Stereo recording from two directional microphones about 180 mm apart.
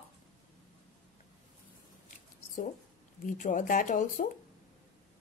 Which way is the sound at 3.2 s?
50° left (ahead or behind).